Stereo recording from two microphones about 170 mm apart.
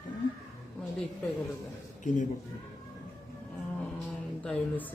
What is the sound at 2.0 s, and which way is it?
Speech, 50° left (ahead or behind).